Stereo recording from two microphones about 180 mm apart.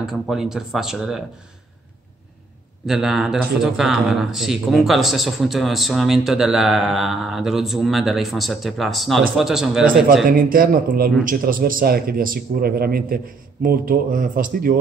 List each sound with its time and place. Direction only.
0.0 s speech: centre (ahead or behind)
2.9 s speech: centre (ahead or behind)
10.2 s a man's voice: 55° right (ahead or behind)